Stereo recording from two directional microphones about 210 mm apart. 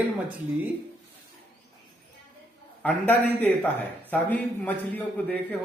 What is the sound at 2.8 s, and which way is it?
Speech, 10° left (ahead or behind).